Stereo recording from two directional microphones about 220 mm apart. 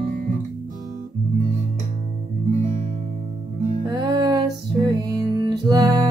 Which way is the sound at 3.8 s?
15° right (ahead or behind).